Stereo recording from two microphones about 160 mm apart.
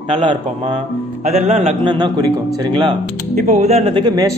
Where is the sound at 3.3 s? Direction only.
45° right (ahead or behind).